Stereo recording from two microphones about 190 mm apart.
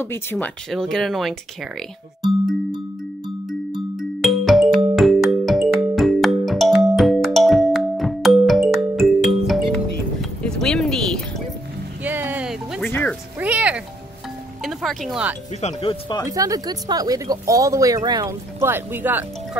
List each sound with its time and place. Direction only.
0.0 s speech: 10° left (ahead or behind)
3.7 s music: centre (ahead or behind)
10.4 s a sound: 5° left (ahead or behind)
12.0 s a sound: 10° right (ahead or behind)
12.8 s music: 10° left (ahead or behind)
13.4 s music: 5° right (ahead or behind)
15.6 s speech: 30° left (ahead or behind)
16.3 s speech: 20° right (ahead or behind)